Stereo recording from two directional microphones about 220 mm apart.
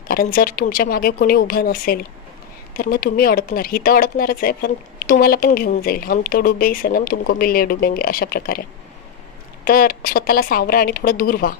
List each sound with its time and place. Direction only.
0.1 s speech: 40° left (ahead or behind)
9.7 s speech: 40° left (ahead or behind)